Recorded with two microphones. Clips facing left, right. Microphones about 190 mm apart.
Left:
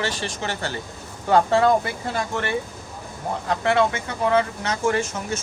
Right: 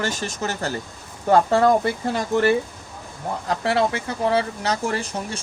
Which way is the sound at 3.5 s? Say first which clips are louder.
Left 1 dB; 35° right (ahead or behind).